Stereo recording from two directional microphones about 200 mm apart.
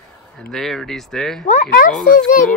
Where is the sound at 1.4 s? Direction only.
40° left (ahead or behind).